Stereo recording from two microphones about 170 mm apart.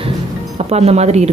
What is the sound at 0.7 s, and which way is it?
Speech, 40° right (ahead or behind).